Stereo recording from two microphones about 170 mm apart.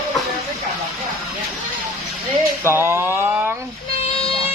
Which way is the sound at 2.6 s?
15° right (ahead or behind).